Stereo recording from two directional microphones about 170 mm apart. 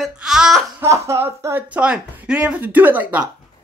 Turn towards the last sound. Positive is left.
turn(degrees=-10)  # may be behind; listen again after turning